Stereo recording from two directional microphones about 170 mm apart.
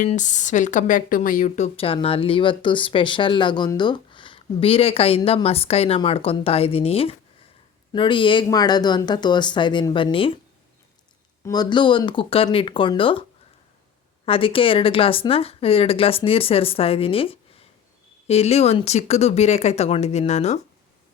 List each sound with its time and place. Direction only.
0.1 s speech: 45° left (ahead or behind)
11.4 s speech: 25° left (ahead or behind)
14.3 s speech: 30° left (ahead or behind)